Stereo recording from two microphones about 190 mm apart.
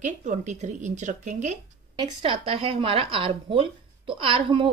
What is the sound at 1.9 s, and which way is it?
Speech, 25° right (ahead or behind).